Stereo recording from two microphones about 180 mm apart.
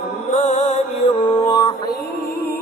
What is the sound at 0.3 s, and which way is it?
Music, 40° left (ahead or behind).